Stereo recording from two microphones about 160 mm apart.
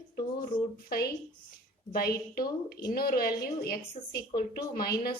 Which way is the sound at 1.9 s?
70° left (ahead or behind).